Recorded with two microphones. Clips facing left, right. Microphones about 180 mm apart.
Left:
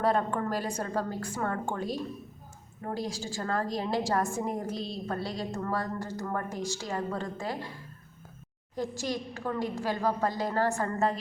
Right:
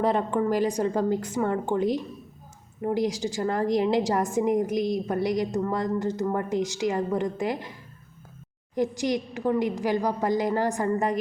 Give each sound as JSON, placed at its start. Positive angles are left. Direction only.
{"t": 0.0, "sound": "a woman's voice", "side_deg": -15}
{"t": 8.7, "sound": "a woman's voice", "side_deg": -20}